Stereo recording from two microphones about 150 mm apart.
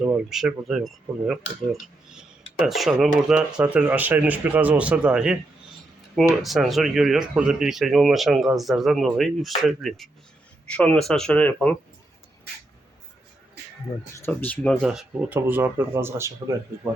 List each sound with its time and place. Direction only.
0.3 s a man's voice: centre (ahead or behind)
14.2 s speech: 10° left (ahead or behind)
14.8 s a man's voice: 10° right (ahead or behind)